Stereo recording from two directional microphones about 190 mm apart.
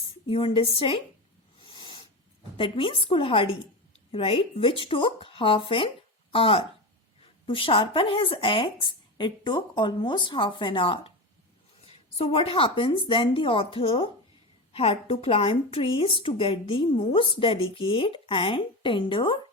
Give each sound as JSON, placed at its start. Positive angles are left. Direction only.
{"t": 0.3, "sound": "a woman's voice", "side_deg": 30}
{"t": 1.6, "sound": "owl", "side_deg": 25}
{"t": 2.6, "sound": "a woman's voice", "side_deg": 25}